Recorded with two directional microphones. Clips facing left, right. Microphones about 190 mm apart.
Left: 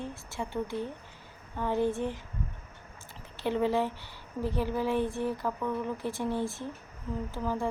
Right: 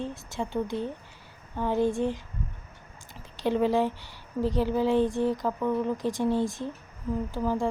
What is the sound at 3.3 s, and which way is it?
Speech, 15° right (ahead or behind).